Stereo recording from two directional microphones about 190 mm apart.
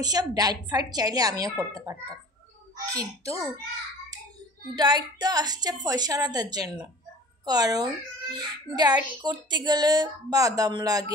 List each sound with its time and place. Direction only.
0.0 s a child's voice: 20° right (ahead or behind)
2.9 s a child's voice: 15° right (ahead or behind)
4.7 s a child's voice: 20° right (ahead or behind)